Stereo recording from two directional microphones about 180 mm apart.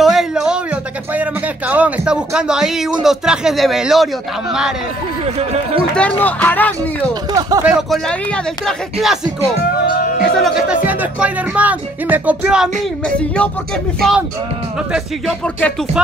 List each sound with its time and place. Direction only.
0.0 s speech: centre (ahead or behind)
5.2 s speech: 35° right (ahead or behind)
5.9 s speech: 10° left (ahead or behind)
7.3 s speech: 20° right (ahead or behind)
7.6 s speech: 5° right (ahead or behind)
8.1 s speech: 5° left (ahead or behind)
9.6 s speech: 50° left (ahead or behind)
10.3 s speech: centre (ahead or behind)
13.0 s speech: 5° left (ahead or behind)